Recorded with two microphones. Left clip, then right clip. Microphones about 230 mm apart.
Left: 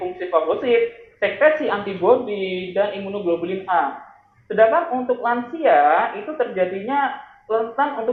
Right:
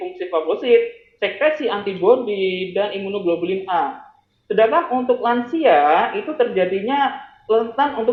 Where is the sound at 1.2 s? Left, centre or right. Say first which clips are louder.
Left 2 dB; right.